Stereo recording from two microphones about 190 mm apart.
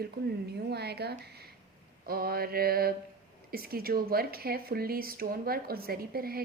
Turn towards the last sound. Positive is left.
turn(degrees=-50)  # may be behind; listen again after turning